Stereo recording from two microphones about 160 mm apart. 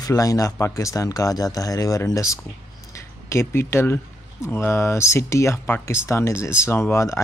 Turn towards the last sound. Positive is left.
turn(degrees=15)  # may be behind; listen again after turning